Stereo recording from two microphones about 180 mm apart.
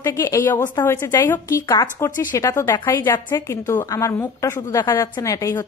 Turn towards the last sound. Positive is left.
turn(degrees=15)  # may be behind; listen again after turning